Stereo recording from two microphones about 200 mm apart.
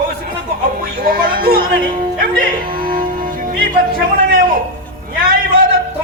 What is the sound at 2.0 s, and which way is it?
Music, 45° right (ahead or behind).